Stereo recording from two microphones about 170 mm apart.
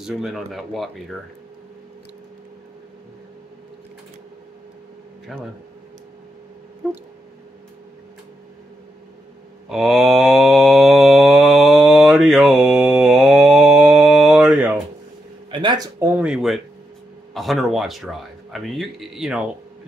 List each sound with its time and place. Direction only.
0.0 s speech: centre (ahead or behind)
5.3 s speech: centre (ahead or behind)
6.8 s speech: 5° right (ahead or behind)
9.7 s mantra: 5° right (ahead or behind)
15.5 s guitar: 25° right (ahead or behind)
16.0 s a sound: 5° right (ahead or behind)
17.3 s a man's voice: centre (ahead or behind)